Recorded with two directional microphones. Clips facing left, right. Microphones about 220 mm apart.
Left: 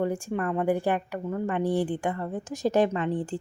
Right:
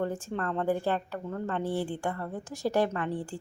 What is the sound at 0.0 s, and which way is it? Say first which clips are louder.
Speech: left 4 dB; 10° left (ahead or behind).